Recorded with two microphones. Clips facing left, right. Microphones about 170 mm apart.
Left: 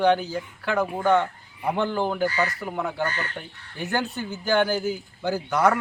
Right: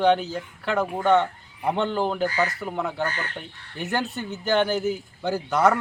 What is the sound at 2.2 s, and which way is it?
Speech, 15° right (ahead or behind).